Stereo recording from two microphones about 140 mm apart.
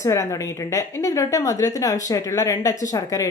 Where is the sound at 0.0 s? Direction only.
20° left (ahead or behind).